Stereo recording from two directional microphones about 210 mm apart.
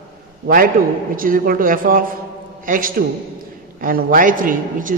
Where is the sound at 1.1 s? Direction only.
40° right (ahead or behind).